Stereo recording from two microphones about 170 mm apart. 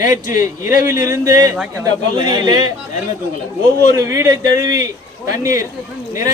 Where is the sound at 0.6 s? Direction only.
20° right (ahead or behind).